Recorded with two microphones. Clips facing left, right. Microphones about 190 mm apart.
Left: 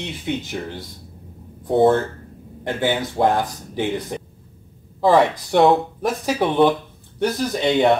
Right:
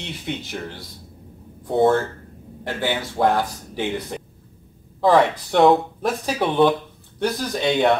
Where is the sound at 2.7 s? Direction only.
20° left (ahead or behind).